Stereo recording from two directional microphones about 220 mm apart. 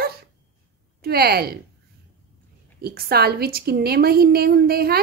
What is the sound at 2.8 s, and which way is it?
A woman's voice, 45° right (ahead or behind).